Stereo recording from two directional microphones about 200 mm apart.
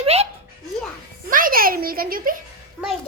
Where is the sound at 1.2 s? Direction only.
45° right (ahead or behind).